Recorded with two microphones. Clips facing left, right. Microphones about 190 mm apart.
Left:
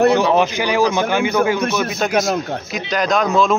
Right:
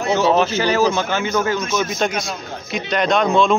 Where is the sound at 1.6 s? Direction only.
60° left (ahead or behind).